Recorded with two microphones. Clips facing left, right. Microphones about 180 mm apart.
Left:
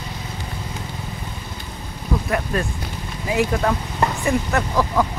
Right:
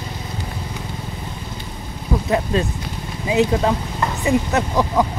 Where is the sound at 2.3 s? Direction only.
20° right (ahead or behind).